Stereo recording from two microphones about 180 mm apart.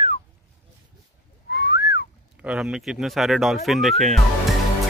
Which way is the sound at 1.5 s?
70° left (ahead or behind).